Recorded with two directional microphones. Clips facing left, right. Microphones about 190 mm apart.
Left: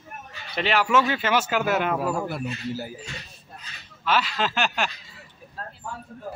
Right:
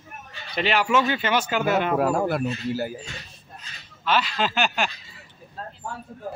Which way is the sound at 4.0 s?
5° left (ahead or behind).